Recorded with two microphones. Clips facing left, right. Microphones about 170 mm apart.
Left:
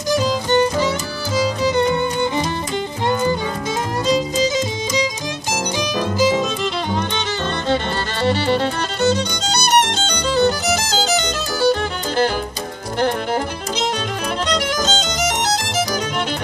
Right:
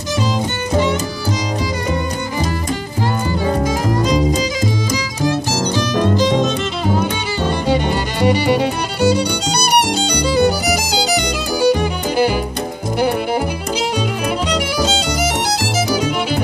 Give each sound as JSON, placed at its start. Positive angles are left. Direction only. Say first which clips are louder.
{"t": 0.5, "sound": "music", "louder": "left 2 dB", "side_deg": 35}
{"t": 5.8, "sound": "music", "louder": "right 3 dB", "side_deg": 10}
{"t": 7.6, "sound": "music", "louder": "right 2 dB", "side_deg": -10}
{"t": 14.5, "sound": "music", "louder": "right 2 dB", "side_deg": -10}